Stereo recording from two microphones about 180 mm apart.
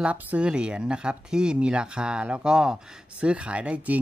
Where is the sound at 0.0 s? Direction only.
10° right (ahead or behind).